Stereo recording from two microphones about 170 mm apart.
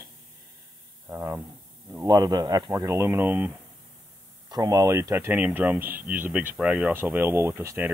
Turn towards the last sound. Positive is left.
turn(degrees=-15)  # may be behind; listen again after turning